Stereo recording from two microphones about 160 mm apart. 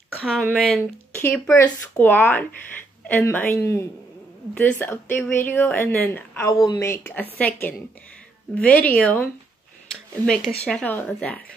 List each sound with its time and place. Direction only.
0.4 s speech: 5° left (ahead or behind)
6.5 s speech: 25° left (ahead or behind)
7.0 s speech: 10° left (ahead or behind)